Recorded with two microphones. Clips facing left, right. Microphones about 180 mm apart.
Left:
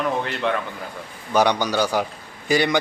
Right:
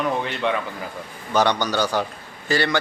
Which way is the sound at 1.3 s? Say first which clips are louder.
Left 1 dB; 10° left (ahead or behind).